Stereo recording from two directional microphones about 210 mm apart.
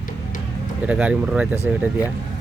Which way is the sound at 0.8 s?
5° right (ahead or behind).